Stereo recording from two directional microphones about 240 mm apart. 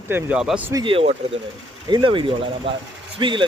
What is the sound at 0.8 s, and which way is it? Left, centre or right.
Speech, right.